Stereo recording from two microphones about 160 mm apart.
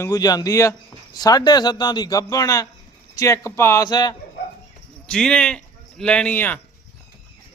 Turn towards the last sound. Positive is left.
turn(degrees=10)  # may be behind; listen again after turning